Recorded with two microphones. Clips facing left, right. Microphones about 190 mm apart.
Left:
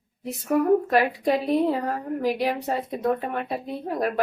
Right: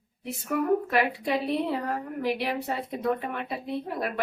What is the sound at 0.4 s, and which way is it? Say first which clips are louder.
Speech: left 5 dB; 40° left (ahead or behind).